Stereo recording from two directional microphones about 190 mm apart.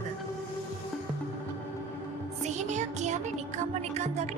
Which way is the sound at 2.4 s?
40° right (ahead or behind).